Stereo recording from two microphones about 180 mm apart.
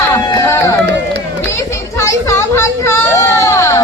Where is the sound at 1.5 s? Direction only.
15° left (ahead or behind).